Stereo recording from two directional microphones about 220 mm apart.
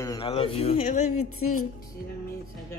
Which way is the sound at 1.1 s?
80° left.